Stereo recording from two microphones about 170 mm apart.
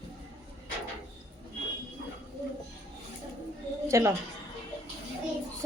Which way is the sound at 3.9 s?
15° right (ahead or behind).